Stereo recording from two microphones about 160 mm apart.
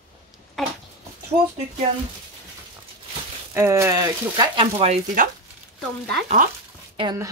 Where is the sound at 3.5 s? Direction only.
15° right (ahead or behind).